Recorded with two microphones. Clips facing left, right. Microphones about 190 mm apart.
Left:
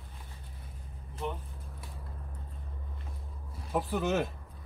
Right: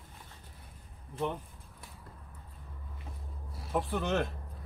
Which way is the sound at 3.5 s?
Centre (ahead or behind).